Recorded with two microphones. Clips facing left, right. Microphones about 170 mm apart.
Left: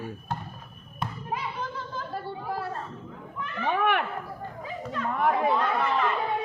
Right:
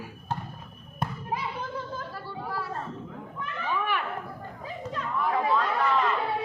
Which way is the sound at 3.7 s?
60° left (ahead or behind).